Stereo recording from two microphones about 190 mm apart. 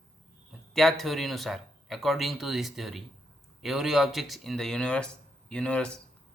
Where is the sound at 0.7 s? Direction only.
Centre (ahead or behind).